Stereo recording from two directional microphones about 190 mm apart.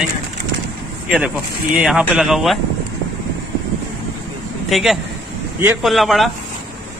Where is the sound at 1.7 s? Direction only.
5° right (ahead or behind).